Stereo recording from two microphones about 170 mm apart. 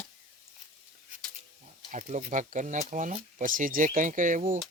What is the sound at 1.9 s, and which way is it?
Speech, 50° right (ahead or behind).